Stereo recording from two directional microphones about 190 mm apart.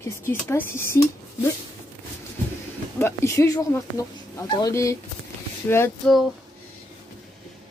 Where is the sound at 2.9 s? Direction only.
15° left (ahead or behind).